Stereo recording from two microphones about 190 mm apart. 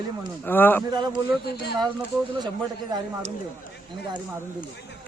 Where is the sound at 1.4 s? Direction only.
60° left (ahead or behind).